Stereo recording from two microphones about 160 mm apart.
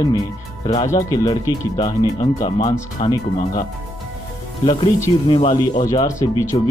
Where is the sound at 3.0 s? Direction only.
40° left (ahead or behind).